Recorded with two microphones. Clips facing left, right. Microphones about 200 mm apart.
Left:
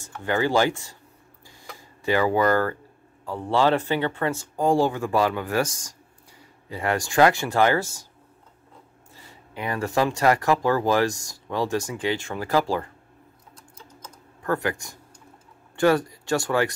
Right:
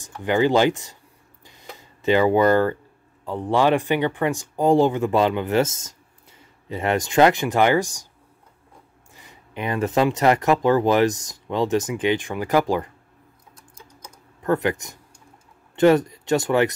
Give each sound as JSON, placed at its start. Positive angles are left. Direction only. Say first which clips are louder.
{"t": 0.0, "sound": "speech", "louder": "right 4 dB", "side_deg": -15}
{"t": 1.4, "sound": "a sound", "louder": "right 2 dB", "side_deg": -20}
{"t": 3.3, "sound": "speech", "louder": "right 2 dB", "side_deg": -20}
{"t": 9.1, "sound": "speech", "louder": "right 3 dB", "side_deg": -20}
{"t": 13.6, "sound": "typing", "louder": "even", "side_deg": -10}
{"t": 15.7, "sound": "speech", "louder": "right 4 dB", "side_deg": -20}